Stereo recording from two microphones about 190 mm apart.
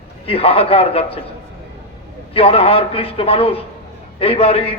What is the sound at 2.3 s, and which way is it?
A man's voice, 30° left (ahead or behind).